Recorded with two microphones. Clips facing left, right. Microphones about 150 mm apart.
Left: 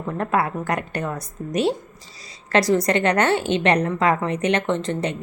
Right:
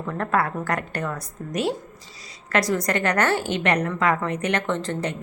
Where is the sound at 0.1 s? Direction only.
20° left (ahead or behind).